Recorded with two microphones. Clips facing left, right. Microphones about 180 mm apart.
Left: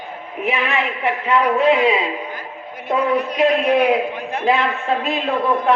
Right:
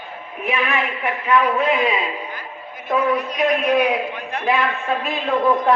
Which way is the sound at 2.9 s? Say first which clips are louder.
Left 1 dB; 30° left (ahead or behind).